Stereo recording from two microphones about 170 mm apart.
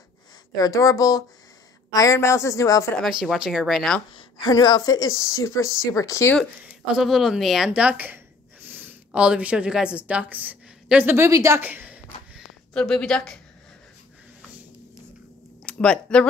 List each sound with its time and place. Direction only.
0.6 s a woman's voice: 20° left (ahead or behind)
3.0 s speech: 5° right (ahead or behind)
4.1 s speech: 25° left (ahead or behind)
6.6 s speech: centre (ahead or behind)
12.7 s speech: 5° left (ahead or behind)
15.6 s speech: 5° left (ahead or behind)